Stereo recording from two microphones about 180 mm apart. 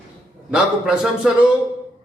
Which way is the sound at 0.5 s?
5° right (ahead or behind).